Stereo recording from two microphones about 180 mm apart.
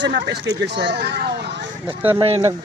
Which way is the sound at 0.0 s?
70° right (ahead or behind).